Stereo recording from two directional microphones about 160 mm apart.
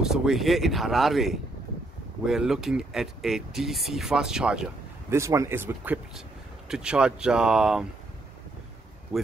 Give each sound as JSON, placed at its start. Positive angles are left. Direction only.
{"t": 0.0, "sound": "speech", "side_deg": 0}
{"t": 5.1, "sound": "speech", "side_deg": -20}
{"t": 9.1, "sound": "speech", "side_deg": -5}